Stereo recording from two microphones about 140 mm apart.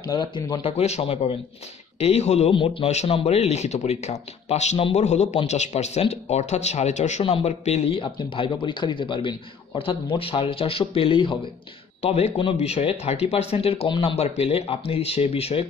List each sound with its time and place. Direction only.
0.0 s speech: 30° left (ahead or behind); by 2.5 s 50° left (ahead or behind)
2.5 s speech: 40° left (ahead or behind)